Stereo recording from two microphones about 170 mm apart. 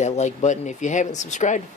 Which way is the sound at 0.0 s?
40° left (ahead or behind).